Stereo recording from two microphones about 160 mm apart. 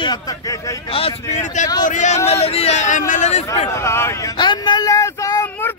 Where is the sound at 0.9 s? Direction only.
40° left (ahead or behind).